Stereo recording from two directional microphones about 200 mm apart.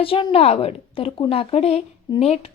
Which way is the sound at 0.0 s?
25° left (ahead or behind).